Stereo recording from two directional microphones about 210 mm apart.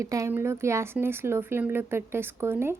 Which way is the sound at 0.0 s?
15° right (ahead or behind).